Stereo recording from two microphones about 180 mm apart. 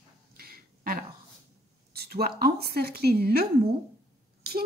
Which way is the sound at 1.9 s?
60° right (ahead or behind).